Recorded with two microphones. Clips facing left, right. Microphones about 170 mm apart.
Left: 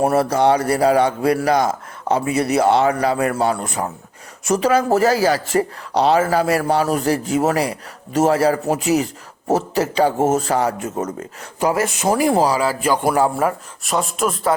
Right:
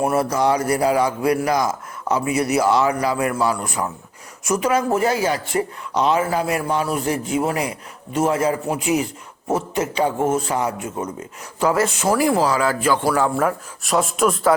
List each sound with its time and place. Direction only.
0.0 s a man's voice: 35° left (ahead or behind)
11.6 s a man's voice: 15° left (ahead or behind)
13.3 s speech: 5° left (ahead or behind)